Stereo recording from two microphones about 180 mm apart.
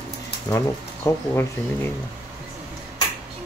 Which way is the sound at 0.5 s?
15° left (ahead or behind).